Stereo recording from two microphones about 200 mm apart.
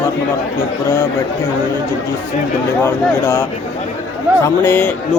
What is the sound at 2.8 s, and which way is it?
Speech, 15° left (ahead or behind).